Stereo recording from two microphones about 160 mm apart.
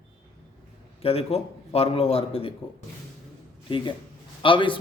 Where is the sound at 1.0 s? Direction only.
40° left (ahead or behind).